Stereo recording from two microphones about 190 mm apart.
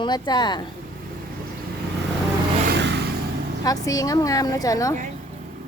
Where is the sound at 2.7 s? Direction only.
65° right (ahead or behind).